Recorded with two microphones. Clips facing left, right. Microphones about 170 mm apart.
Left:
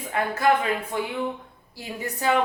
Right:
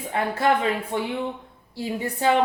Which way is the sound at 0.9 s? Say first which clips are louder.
Right 1 dB; 25° right (ahead or behind).